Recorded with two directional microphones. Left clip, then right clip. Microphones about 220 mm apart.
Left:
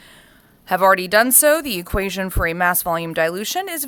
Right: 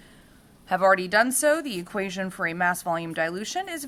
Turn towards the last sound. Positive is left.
turn(degrees=50)  # may be behind; listen again after turning